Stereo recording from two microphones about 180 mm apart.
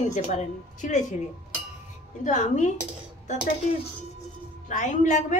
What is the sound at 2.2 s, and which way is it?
Speech, 40° left (ahead or behind).